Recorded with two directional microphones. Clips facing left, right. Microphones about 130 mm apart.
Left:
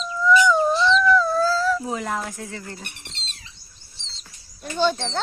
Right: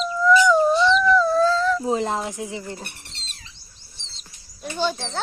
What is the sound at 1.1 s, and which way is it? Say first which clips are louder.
Dog: right 2 dB; centre (ahead or behind).